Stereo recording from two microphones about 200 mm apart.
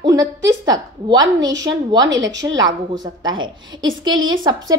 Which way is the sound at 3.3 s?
75° right (ahead or behind).